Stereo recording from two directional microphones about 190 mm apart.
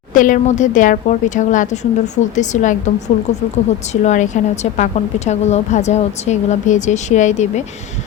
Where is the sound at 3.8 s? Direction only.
40° left (ahead or behind).